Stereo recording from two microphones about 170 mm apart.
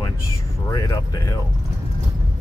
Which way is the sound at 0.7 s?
20° left (ahead or behind).